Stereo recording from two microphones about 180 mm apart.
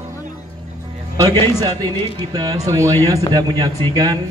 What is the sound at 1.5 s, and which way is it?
Speech, 20° right (ahead or behind).